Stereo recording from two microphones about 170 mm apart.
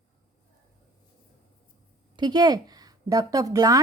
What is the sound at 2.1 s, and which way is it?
Speech, 25° right (ahead or behind).